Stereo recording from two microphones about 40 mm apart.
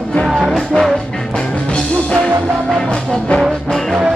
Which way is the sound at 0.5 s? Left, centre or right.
Centre.